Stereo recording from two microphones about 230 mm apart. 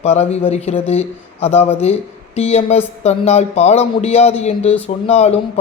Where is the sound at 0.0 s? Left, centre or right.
Left.